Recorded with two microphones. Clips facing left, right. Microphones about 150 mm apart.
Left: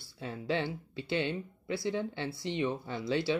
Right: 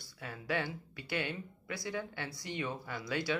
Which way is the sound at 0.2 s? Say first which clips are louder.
Left 4 dB; 25° left (ahead or behind).